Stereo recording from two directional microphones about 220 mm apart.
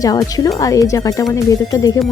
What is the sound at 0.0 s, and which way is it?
Speech, 15° left (ahead or behind).